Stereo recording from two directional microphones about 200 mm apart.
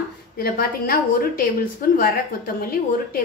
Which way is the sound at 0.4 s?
45° left (ahead or behind).